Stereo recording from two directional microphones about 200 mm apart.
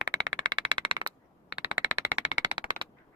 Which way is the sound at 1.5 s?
5° right (ahead or behind).